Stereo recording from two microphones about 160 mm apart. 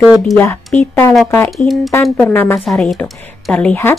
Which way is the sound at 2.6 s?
Centre (ahead or behind).